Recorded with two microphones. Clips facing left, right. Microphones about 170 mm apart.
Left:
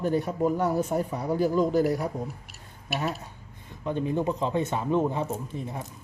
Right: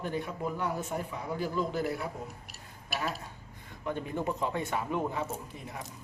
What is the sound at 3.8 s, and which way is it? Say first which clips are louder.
Speech: left 6 dB; 20° left (ahead or behind).